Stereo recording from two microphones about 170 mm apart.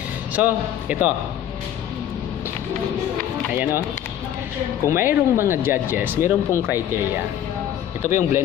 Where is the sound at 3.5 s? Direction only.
10° right (ahead or behind).